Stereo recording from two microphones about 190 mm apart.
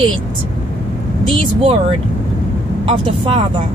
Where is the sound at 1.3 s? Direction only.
30° right (ahead or behind).